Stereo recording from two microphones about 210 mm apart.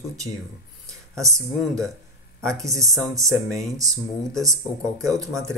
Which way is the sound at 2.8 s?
Centre (ahead or behind).